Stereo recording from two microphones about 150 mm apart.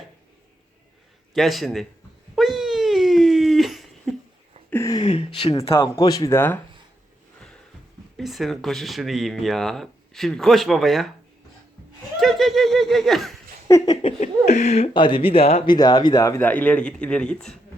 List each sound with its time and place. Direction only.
1.3 s speech: centre (ahead or behind)
2.3 s a sound: centre (ahead or behind)
4.7 s a sound: 20° left (ahead or behind)
5.0 s a sound: 40° left (ahead or behind)
5.8 s speech: 25° left (ahead or behind)
7.3 s music: 5° left (ahead or behind)
8.1 s speech: centre (ahead or behind)
12.2 s speech: centre (ahead or behind)
13.7 s speech: 25° left (ahead or behind)
14.4 s speech: 50° left (ahead or behind)
15.6 s speech: 30° left (ahead or behind); by 17.6 s 5° left (ahead or behind)